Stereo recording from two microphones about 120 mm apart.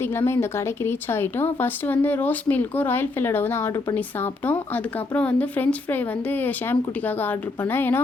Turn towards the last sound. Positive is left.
turn(degrees=15)  # may be behind; listen again after turning